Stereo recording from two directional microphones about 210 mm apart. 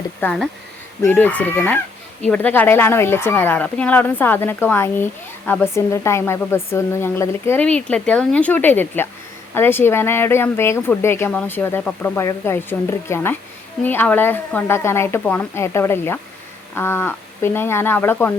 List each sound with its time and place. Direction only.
0.2 s speech: 5° left (ahead or behind)